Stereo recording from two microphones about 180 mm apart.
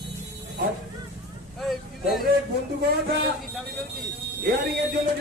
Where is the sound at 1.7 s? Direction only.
Centre (ahead or behind).